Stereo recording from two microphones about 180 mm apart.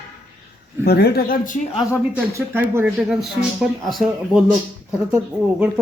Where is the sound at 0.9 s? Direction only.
60° left (ahead or behind).